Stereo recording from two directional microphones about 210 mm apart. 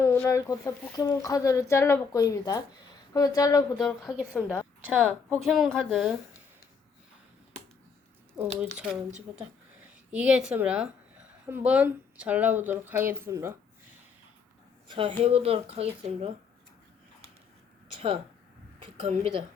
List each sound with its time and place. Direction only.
0.0 s speech: 15° left (ahead or behind)
3.8 s a woman's voice: centre (ahead or behind)
8.6 s a woman's voice: 5° right (ahead or behind)
10.1 s a woman's voice: 5° right (ahead or behind)
14.8 s speech: 25° right (ahead or behind)
17.9 s a woman's voice: 25° right (ahead or behind)